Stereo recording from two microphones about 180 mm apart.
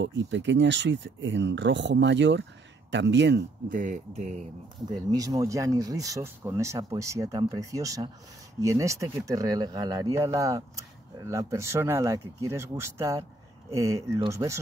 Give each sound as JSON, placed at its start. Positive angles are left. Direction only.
{"t": 0.0, "sound": "speech", "side_deg": -90}
{"t": 3.7, "sound": "speech", "side_deg": -45}
{"t": 5.1, "sound": "speech", "side_deg": -20}